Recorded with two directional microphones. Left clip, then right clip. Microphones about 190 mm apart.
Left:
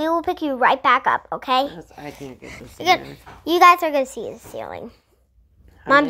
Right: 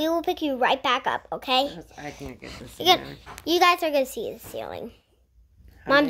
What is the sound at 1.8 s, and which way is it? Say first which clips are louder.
Speech: left 2 dB; 20° left (ahead or behind).